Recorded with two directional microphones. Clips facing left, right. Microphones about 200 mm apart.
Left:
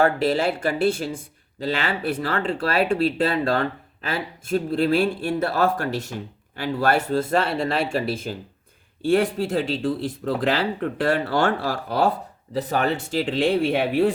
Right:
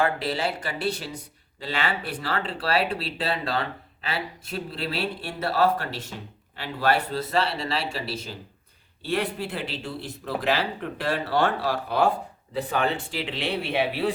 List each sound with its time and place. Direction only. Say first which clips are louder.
0.0 s speech: left 6 dB; 45° left (ahead or behind)